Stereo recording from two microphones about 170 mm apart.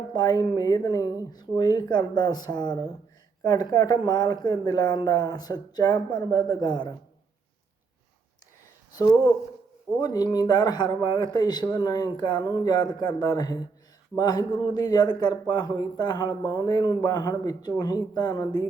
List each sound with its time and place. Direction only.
0.1 s a man's voice: 25° left (ahead or behind)
9.0 s a man's voice: 20° left (ahead or behind)